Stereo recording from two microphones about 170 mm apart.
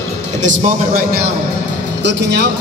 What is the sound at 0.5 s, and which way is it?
Speech, 65° right (ahead or behind).